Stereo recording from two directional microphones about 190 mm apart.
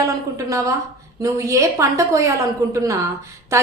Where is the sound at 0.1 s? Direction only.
15° right (ahead or behind).